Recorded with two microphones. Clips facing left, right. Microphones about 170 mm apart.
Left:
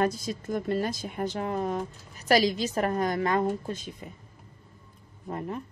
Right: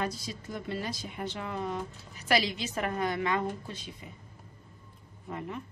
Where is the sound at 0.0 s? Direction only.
50° left (ahead or behind).